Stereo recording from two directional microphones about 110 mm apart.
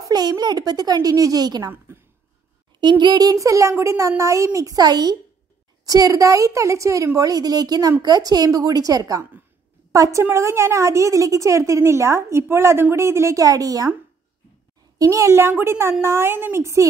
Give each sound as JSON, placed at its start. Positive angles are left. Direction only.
{"t": 0.1, "sound": "speech", "side_deg": -40}
{"t": 1.9, "sound": "speech", "side_deg": -20}
{"t": 2.8, "sound": "a woman's voice", "side_deg": -45}
{"t": 15.0, "sound": "a woman's voice", "side_deg": -30}